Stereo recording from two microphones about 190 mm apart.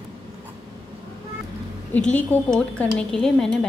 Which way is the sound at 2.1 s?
5° left (ahead or behind).